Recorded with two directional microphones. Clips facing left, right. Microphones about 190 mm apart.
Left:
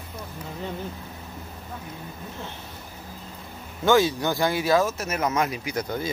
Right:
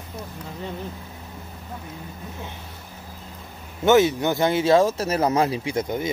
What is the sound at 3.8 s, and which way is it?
Speech, 20° right (ahead or behind).